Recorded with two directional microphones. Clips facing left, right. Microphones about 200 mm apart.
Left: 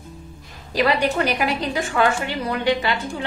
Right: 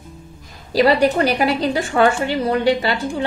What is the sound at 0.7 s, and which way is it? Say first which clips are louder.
A woman's voice: right 5 dB; 35° right (ahead or behind).